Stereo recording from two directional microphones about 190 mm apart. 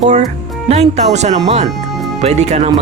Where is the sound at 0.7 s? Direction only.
35° right (ahead or behind).